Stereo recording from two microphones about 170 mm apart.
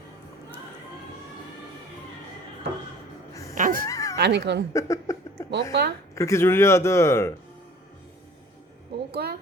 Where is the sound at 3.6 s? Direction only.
55° right (ahead or behind).